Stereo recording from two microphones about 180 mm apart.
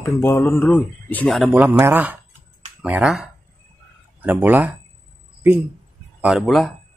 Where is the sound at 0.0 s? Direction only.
15° left (ahead or behind).